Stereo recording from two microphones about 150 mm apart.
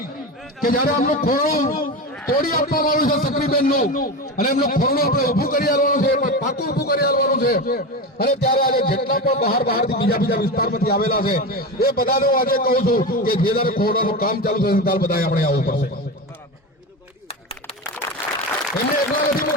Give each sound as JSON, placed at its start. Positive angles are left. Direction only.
{"t": 0.6, "sound": "a man's voice", "side_deg": 75}